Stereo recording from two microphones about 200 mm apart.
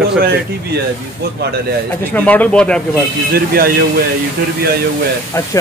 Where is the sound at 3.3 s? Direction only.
50° right (ahead or behind).